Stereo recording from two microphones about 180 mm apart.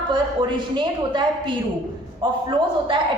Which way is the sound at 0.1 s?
25° right (ahead or behind).